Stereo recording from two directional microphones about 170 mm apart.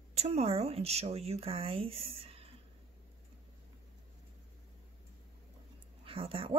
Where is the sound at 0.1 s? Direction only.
40° right (ahead or behind).